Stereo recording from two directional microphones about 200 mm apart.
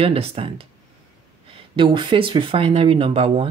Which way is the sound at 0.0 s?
30° right (ahead or behind).